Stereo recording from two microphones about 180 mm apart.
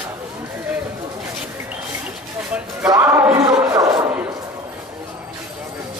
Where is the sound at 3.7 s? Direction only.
15° right (ahead or behind).